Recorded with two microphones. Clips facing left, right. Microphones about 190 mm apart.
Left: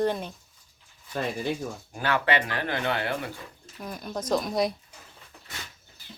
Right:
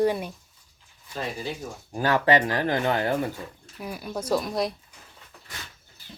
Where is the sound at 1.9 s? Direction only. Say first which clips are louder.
Right 5 dB; 40° right (ahead or behind).